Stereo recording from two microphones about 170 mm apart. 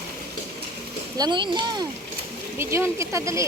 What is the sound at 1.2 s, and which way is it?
Speech, 25° right (ahead or behind).